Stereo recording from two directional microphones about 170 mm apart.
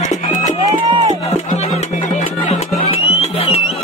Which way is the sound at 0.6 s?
20° right (ahead or behind).